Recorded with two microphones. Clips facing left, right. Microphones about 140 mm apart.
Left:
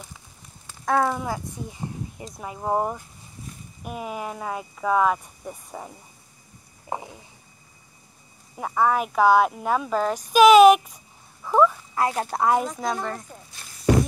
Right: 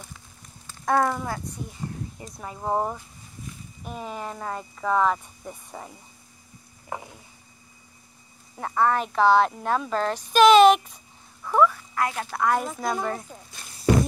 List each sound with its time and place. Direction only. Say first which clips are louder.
0.8 s speech: even; centre (ahead or behind)
2.4 s speech: left 1 dB; 10° left (ahead or behind)
6.9 s a sound: left 3 dB; 20° left (ahead or behind)
8.5 s speech: left 1 dB; 10° left (ahead or behind); by 12.4 s 35° left (ahead or behind)
12.8 s speech: even; 5° right (ahead or behind)